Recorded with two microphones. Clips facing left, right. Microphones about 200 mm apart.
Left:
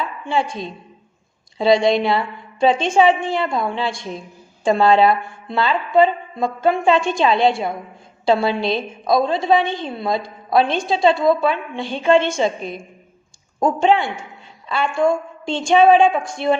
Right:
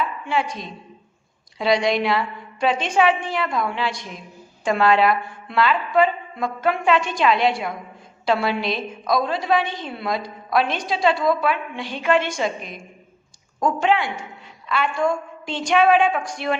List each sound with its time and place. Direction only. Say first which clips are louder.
0.3 s a woman's voice: left 7 dB; 30° left (ahead or behind)